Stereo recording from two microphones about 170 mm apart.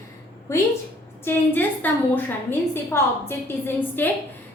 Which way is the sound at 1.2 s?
10° left (ahead or behind).